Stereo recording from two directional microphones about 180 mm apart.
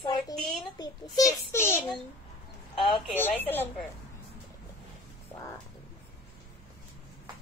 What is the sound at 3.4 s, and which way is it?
Speech, 10° left (ahead or behind).